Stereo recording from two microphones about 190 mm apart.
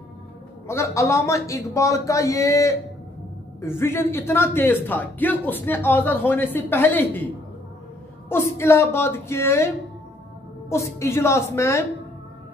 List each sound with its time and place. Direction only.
0.7 s a man's voice: 15° left (ahead or behind)
8.3 s a man's voice: 15° left (ahead or behind)
10.7 s a man's voice: 15° left (ahead or behind)